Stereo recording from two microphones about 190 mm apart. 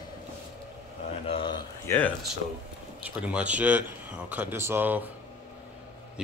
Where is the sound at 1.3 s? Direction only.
25° left (ahead or behind).